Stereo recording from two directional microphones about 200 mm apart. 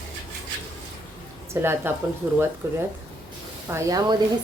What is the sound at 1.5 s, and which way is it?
A woman's voice, 15° right (ahead or behind).